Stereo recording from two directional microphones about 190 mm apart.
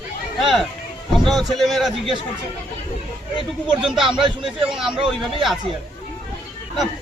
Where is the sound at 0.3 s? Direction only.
Centre (ahead or behind).